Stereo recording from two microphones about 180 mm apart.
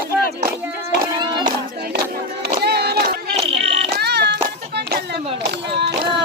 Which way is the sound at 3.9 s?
65° right (ahead or behind).